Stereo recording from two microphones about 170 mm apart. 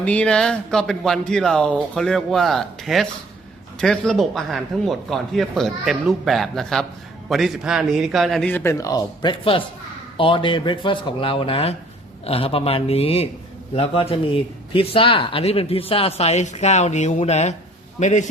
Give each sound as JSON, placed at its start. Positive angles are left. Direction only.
{"t": 0.0, "sound": "a man's voice", "side_deg": 5}